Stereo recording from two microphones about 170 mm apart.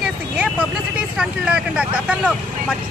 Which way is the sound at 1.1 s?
5° right (ahead or behind).